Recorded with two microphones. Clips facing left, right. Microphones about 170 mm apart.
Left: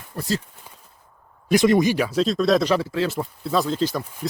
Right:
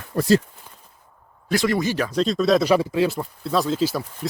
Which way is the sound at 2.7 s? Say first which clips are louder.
Right 3 dB; 15° right (ahead or behind).